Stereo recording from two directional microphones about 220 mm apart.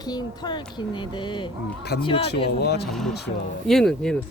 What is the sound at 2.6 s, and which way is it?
Speech, 50° left (ahead or behind).